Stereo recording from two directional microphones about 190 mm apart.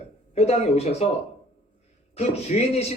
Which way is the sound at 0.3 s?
35° left (ahead or behind).